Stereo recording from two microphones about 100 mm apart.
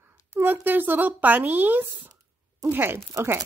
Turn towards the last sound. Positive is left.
turn(degrees=-25)  # may be behind; listen again after turning